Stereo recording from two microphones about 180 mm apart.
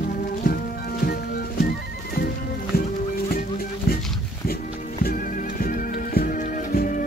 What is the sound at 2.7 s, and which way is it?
Music, 55° left (ahead or behind).